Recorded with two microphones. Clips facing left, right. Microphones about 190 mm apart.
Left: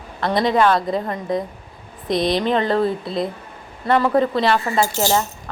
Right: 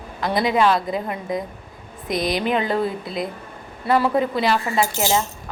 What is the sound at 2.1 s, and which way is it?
Speech, 25° left (ahead or behind).